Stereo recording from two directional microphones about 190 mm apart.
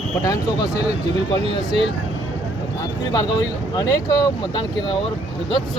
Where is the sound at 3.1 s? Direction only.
20° left (ahead or behind).